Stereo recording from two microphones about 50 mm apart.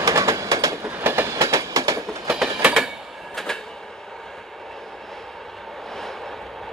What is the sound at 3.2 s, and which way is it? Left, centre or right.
Train, centre.